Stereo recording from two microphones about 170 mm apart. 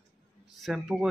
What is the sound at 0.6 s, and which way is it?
Speech, centre (ahead or behind).